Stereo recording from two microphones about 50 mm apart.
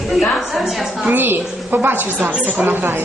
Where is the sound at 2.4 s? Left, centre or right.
Right.